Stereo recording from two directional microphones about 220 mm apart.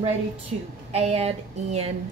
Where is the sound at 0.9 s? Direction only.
30° right (ahead or behind).